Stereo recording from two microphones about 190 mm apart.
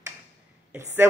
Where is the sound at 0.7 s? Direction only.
10° right (ahead or behind).